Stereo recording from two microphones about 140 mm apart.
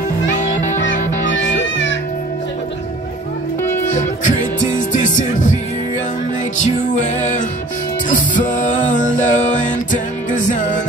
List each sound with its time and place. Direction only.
0.7 s music: 65° left (ahead or behind)
3.9 s music: 65° left (ahead or behind)
6.6 s music: 60° left (ahead or behind)